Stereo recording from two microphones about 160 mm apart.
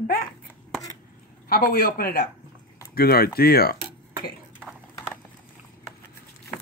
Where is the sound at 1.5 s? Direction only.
65° left (ahead or behind).